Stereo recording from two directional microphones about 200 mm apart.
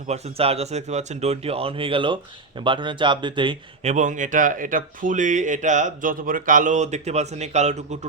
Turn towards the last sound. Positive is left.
turn(degrees=-35)  # may be behind; listen again after turning